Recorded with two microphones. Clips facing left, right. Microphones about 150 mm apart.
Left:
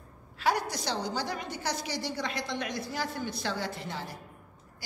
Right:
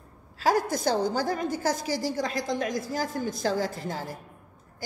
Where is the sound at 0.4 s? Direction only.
40° right (ahead or behind).